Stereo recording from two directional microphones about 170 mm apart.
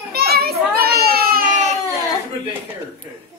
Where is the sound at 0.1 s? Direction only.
65° right (ahead or behind); by 1.8 s 45° right (ahead or behind).